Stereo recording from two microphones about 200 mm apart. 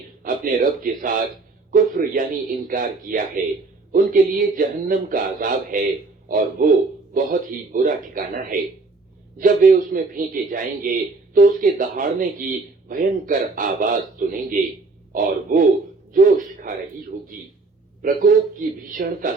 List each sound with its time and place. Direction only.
0.2 s a man's voice: 45° right (ahead or behind)